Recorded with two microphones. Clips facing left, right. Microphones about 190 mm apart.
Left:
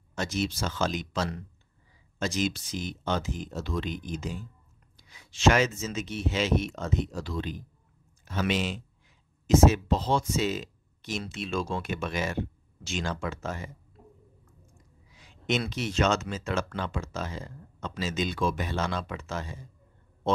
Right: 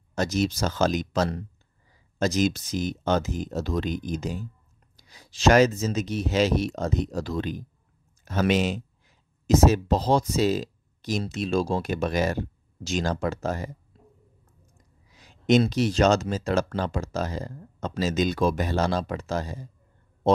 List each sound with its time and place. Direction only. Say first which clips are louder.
0.1 s speech: right 5 dB; 40° right (ahead or behind)
13.9 s whispering: left 2 dB; 30° right (ahead or behind)
15.1 s a sound: right 9 dB; 40° right (ahead or behind)
15.7 s speech: right 6 dB; 40° right (ahead or behind)